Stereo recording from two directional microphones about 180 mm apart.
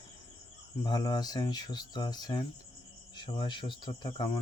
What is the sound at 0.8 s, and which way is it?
Speech, 25° left (ahead or behind).